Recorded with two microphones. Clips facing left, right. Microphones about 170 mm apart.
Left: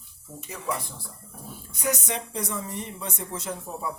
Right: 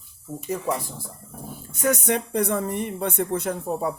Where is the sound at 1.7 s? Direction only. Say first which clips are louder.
Right 7 dB; 55° right (ahead or behind).